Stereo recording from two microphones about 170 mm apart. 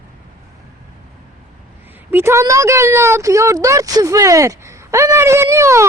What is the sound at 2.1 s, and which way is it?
Speech, 15° right (ahead or behind).